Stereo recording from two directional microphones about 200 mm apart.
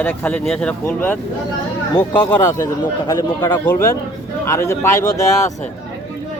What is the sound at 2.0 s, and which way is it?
Speech, 20° left (ahead or behind).